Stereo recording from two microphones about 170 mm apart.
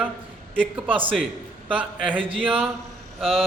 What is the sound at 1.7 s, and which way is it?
Speech, 10° right (ahead or behind).